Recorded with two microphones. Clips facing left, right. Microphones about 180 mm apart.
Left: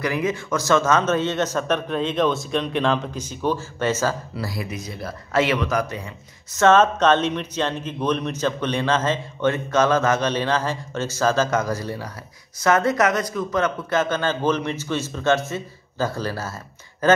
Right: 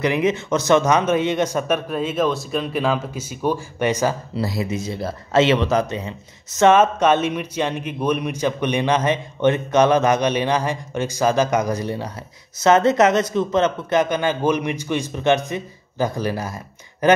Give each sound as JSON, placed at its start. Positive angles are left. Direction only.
{"t": 0.0, "sound": "a man's voice", "side_deg": -20}
{"t": 6.6, "sound": "a man's voice", "side_deg": -10}